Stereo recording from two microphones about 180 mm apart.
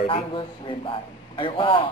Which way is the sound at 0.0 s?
30° left (ahead or behind).